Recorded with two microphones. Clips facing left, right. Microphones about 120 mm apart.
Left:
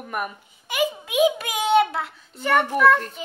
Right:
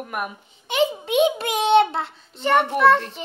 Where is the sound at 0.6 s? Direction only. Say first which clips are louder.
Right 3 dB; 25° right (ahead or behind).